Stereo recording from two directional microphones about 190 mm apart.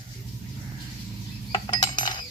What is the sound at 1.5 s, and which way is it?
Dishes, 20° left (ahead or behind).